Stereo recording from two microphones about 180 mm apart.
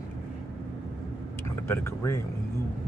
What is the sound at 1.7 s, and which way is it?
Speech, 15° left (ahead or behind).